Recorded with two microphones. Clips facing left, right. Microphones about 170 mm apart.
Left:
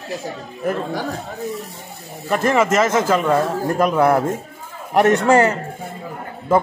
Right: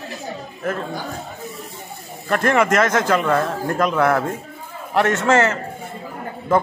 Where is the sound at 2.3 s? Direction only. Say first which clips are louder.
Left 1 dB; 5° left (ahead or behind).